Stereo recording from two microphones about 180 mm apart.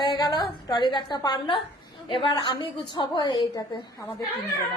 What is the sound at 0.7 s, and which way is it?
A woman's voice, 25° left (ahead or behind).